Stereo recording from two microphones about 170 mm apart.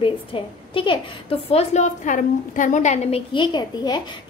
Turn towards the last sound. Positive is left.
turn(degrees=25)  # may be behind; listen again after turning